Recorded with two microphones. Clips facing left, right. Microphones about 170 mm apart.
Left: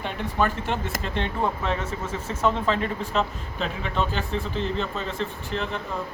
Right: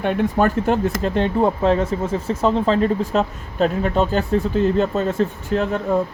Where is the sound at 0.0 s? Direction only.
45° right (ahead or behind).